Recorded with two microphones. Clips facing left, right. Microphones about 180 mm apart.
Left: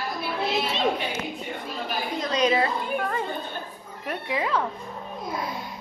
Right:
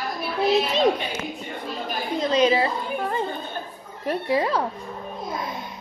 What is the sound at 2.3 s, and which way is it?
A woman's voice, 30° right (ahead or behind).